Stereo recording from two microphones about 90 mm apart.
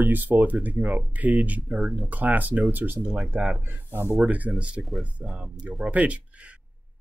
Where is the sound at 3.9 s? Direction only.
25° right (ahead or behind).